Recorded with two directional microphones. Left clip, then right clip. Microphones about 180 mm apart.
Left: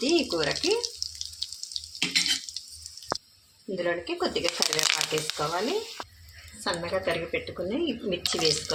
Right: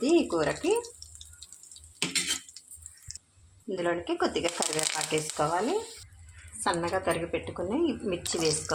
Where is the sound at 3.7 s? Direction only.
Centre (ahead or behind).